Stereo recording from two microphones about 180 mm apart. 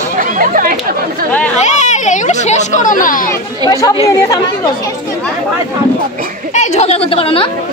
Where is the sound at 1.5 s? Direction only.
40° left (ahead or behind).